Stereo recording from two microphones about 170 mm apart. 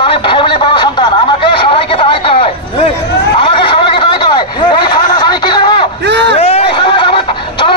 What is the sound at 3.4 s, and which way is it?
Snicker, 30° left (ahead or behind).